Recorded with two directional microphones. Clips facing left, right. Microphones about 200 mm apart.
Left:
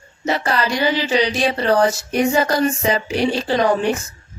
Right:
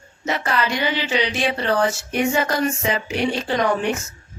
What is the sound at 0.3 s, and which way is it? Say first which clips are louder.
Speech: left 3 dB; 35° left (ahead or behind).